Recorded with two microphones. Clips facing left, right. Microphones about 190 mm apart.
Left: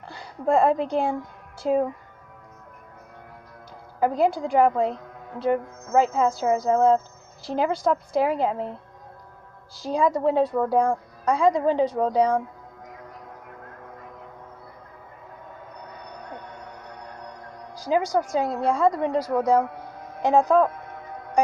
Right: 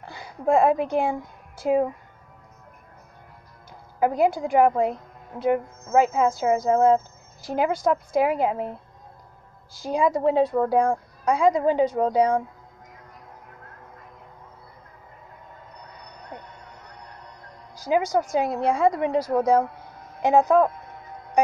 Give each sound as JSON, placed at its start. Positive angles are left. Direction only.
{"t": 0.1, "sound": "a woman's voice", "side_deg": -10}
{"t": 4.0, "sound": "speech", "side_deg": -15}
{"t": 9.8, "sound": "speech", "side_deg": -15}
{"t": 17.7, "sound": "music", "side_deg": -20}
{"t": 18.1, "sound": "speech", "side_deg": -20}